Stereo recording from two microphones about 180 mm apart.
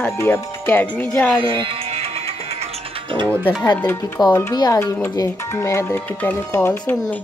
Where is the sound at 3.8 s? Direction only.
10° left (ahead or behind).